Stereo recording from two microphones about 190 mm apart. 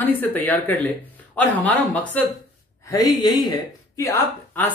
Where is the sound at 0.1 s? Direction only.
10° left (ahead or behind).